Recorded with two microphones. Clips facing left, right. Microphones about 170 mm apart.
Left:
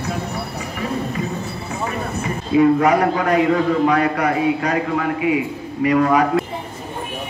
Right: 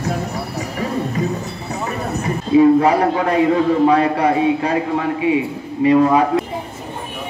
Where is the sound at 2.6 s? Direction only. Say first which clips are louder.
Right 2 dB; 30° right (ahead or behind).